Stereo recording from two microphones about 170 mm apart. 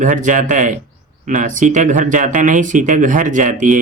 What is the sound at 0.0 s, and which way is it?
Speech, 50° right (ahead or behind).